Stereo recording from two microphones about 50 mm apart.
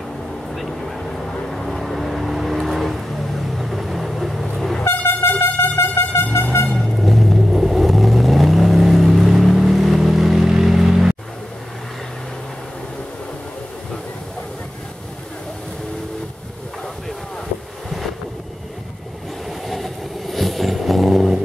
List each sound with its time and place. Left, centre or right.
0.6 s vehicle: centre
4.8 s air horn: left
7.0 s vehicle: centre
19.7 s vehicle: centre